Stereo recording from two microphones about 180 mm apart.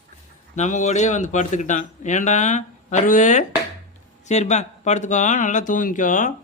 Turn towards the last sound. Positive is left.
turn(degrees=45)  # may be behind; listen again after turning